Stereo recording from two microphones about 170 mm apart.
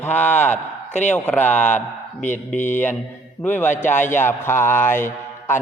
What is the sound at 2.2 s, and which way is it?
Speech, 45° left (ahead or behind).